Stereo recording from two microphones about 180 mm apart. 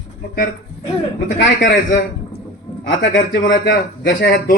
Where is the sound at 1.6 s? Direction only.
50° left (ahead or behind).